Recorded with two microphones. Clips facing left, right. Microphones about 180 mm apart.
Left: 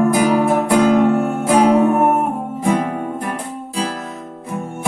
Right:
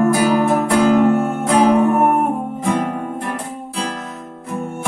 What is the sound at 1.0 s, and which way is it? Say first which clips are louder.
Music: even; centre (ahead or behind).